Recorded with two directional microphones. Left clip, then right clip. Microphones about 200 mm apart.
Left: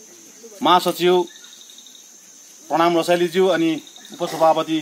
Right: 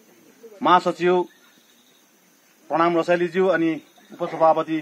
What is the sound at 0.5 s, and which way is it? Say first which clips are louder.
Speech: left 1 dB; 5° left (ahead or behind).